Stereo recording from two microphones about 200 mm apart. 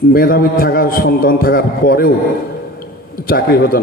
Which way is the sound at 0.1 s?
50° left (ahead or behind).